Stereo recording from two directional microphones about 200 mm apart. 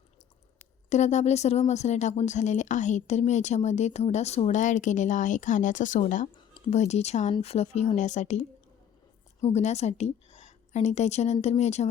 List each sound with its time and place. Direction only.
0.9 s a woman's voice: 35° left (ahead or behind)